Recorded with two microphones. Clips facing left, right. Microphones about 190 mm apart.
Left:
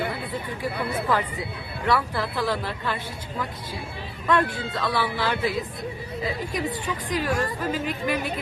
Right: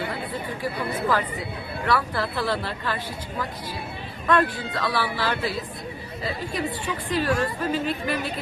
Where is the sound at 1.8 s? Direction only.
15° left (ahead or behind).